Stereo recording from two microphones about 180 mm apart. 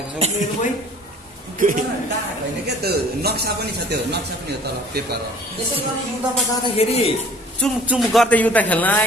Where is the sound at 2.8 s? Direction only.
60° right (ahead or behind).